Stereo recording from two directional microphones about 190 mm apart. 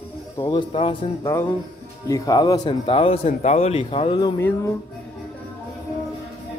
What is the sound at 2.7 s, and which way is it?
Speech, 30° left (ahead or behind).